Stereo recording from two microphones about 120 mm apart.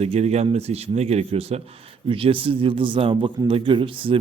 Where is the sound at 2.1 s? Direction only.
45° right (ahead or behind).